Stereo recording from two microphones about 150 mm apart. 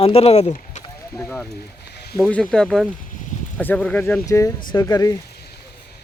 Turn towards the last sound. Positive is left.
turn(degrees=25)  # may be behind; listen again after turning